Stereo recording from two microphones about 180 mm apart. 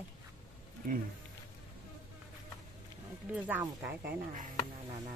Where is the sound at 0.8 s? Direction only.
50° right (ahead or behind).